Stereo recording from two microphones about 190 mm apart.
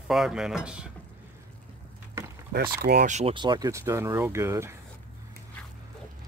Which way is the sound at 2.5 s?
50° right (ahead or behind).